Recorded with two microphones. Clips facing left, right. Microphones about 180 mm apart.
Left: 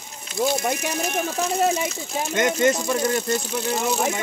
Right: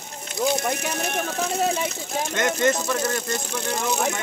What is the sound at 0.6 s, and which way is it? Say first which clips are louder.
Speech: left 1 dB; 20° left (ahead or behind).